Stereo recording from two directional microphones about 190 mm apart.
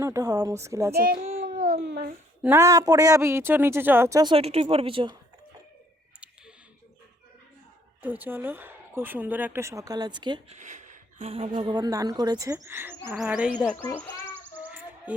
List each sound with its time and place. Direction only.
0.0 s speech: 15° right (ahead or behind)
0.9 s a child's voice: 50° right (ahead or behind)
2.4 s speech: 15° right (ahead or behind)
8.0 s speech: 10° right (ahead or behind)
10.6 s a woman's voice: 40° right (ahead or behind); by 13.6 s 5° right (ahead or behind)
13.6 s speech: 10° left (ahead or behind)
14.4 s a sound: 10° right (ahead or behind)